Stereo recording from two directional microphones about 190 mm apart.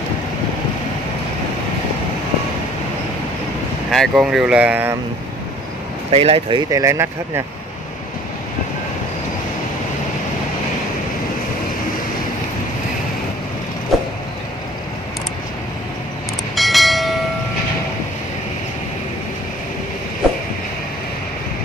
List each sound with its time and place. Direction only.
3.9 s speech: centre (ahead or behind)
6.1 s speech: 30° right (ahead or behind)
6.7 s speech: 15° right (ahead or behind)
13.9 s vehicle: centre (ahead or behind)
16.5 s train: centre (ahead or behind)